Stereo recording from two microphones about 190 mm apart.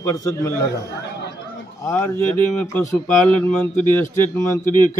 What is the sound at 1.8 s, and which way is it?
Speech, 10° left (ahead or behind).